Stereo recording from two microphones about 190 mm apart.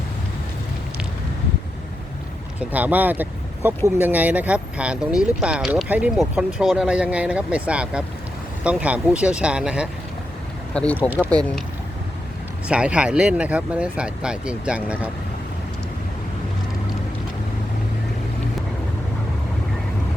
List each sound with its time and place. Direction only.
2.6 s speech: 10° right (ahead or behind)
11.3 s speech: 5° left (ahead or behind)
12.6 s speech: 5° right (ahead or behind)